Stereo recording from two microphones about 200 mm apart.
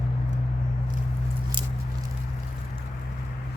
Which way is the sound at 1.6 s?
20° right (ahead or behind).